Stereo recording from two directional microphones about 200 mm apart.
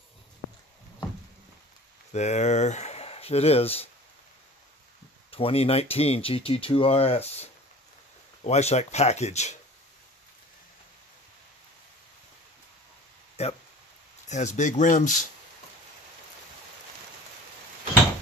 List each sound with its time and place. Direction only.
2.1 s speech: 35° left (ahead or behind)
5.3 s speech: 30° left (ahead or behind)
8.5 s speech: 35° left (ahead or behind)
13.4 s speech: 30° left (ahead or behind)